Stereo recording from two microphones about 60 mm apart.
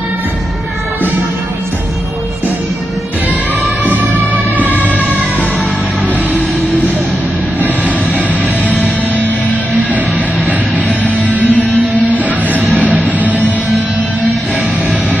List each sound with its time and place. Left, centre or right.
3.6 s music: right
8.6 s music: left
9.9 s music: right
12.4 s music: right